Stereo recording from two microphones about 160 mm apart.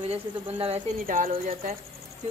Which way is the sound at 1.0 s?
60° right (ahead or behind).